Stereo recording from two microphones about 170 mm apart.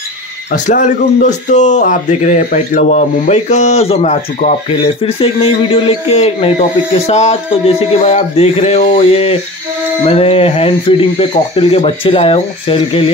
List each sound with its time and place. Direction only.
0.5 s speech: 45° left (ahead or behind)